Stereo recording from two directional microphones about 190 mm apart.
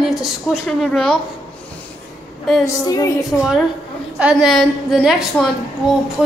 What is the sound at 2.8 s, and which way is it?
Speech, 20° left (ahead or behind).